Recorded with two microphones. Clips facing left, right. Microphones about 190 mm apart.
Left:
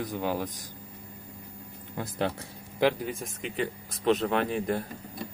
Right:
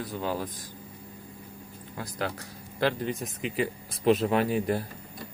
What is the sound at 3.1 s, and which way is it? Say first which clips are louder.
Speech: right 3 dB; centre (ahead or behind).